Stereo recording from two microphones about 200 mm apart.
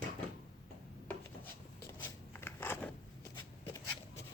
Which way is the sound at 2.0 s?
10° left (ahead or behind).